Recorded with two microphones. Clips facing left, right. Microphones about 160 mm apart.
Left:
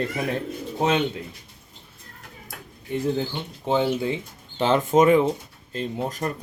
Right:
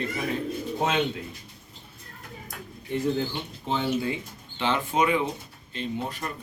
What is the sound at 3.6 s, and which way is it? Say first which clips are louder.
Speech: left 5 dB; 20° left (ahead or behind).